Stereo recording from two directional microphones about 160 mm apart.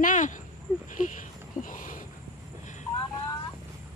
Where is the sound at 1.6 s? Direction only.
55° left (ahead or behind).